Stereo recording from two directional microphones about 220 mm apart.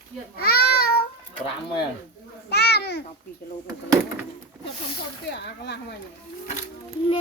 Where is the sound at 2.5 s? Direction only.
50° left (ahead or behind).